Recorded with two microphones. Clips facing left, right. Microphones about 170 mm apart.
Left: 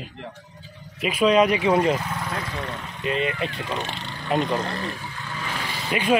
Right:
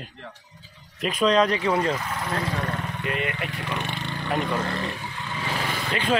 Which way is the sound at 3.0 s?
20° left (ahead or behind).